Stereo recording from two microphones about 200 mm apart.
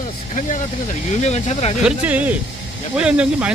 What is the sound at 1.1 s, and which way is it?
Speech, 35° left (ahead or behind).